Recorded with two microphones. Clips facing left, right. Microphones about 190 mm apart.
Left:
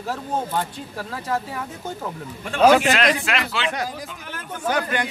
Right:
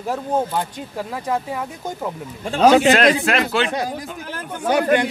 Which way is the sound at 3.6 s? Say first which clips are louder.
Right 5 dB; 45° right (ahead or behind).